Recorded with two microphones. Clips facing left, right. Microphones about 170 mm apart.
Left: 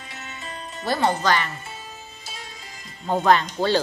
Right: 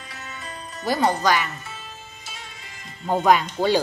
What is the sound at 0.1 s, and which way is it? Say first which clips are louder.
Music: even; 25° left (ahead or behind).